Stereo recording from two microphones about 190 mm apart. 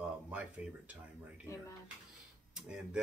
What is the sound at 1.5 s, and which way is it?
Speech, 15° left (ahead or behind).